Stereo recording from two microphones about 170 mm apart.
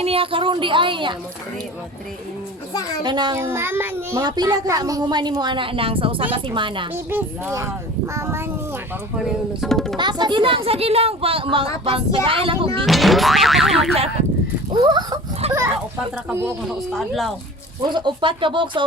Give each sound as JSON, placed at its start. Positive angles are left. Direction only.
{"t": 0.0, "sound": "a woman's voice", "side_deg": -35}
{"t": 3.0, "sound": "a woman's voice", "side_deg": -25}
{"t": 3.4, "sound": "a child's voice", "side_deg": -15}
{"t": 4.2, "sound": "a woman's voice", "side_deg": -25}
{"t": 6.9, "sound": "a child's voice", "side_deg": -10}
{"t": 9.1, "sound": "boing", "side_deg": 0}
{"t": 10.0, "sound": "speech", "side_deg": -25}
{"t": 12.8, "sound": "boing", "side_deg": 0}
{"t": 14.7, "sound": "a woman's voice", "side_deg": -25}
{"t": 15.4, "sound": "speech", "side_deg": -35}
{"t": 16.3, "sound": "a child's voice", "side_deg": -15}
{"t": 16.6, "sound": "boing", "side_deg": 0}
{"t": 17.8, "sound": "a woman's voice", "side_deg": -25}